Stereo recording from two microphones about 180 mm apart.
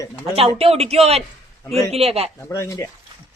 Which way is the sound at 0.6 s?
35° right (ahead or behind).